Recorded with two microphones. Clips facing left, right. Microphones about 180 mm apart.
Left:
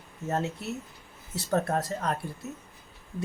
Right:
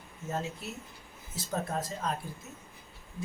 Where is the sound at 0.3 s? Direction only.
65° left (ahead or behind).